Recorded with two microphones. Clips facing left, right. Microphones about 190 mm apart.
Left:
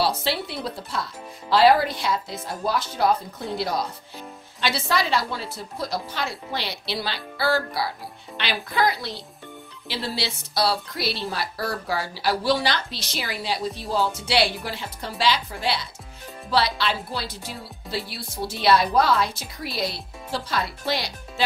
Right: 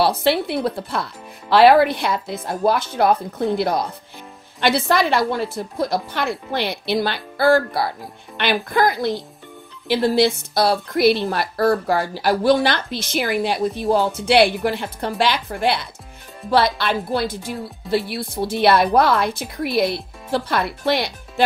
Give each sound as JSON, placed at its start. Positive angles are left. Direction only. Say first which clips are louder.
{"t": 0.0, "sound": "speech", "louder": "right 7 dB", "side_deg": -60}